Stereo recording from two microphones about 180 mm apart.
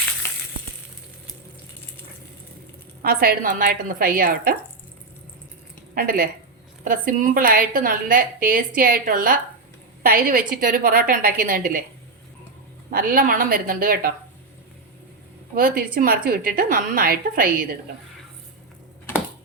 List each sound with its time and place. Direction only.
0.2 s crushing: 15° left (ahead or behind)
3.0 s a woman's voice: 55° right (ahead or behind)
5.9 s a woman's voice: 55° right (ahead or behind)
12.9 s a woman's voice: 55° right (ahead or behind)
15.5 s a woman's voice: 55° right (ahead or behind)